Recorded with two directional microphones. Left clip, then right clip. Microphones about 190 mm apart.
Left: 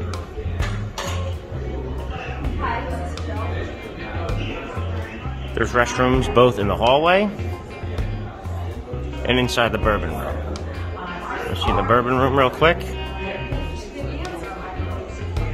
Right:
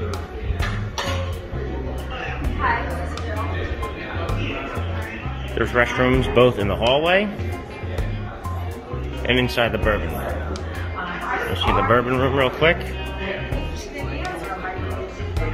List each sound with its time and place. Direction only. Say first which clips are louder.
5.6 s speech: even; 10° left (ahead or behind)
9.2 s speech: left 1 dB; 20° left (ahead or behind)
11.7 s speech: left 1 dB; 15° left (ahead or behind)